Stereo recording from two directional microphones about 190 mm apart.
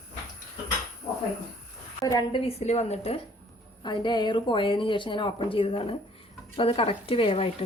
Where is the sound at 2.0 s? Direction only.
20° left (ahead or behind).